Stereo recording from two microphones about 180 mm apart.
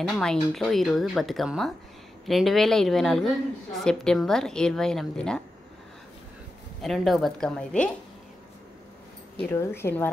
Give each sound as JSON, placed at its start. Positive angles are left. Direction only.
{"t": 0.1, "sound": "a woman's voice", "side_deg": 5}
{"t": 6.8, "sound": "a woman's voice", "side_deg": 0}
{"t": 9.5, "sound": "speech", "side_deg": 15}